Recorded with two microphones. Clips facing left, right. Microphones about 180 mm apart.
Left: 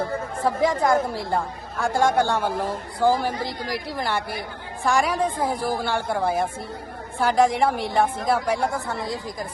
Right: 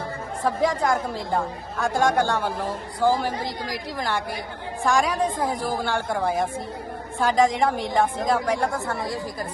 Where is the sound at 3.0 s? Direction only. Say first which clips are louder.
Left 1 dB; 15° left (ahead or behind).